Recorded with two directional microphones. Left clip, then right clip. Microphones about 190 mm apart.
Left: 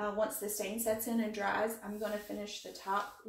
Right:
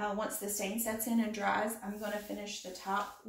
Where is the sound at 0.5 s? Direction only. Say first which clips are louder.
Left 3 dB; 15° right (ahead or behind).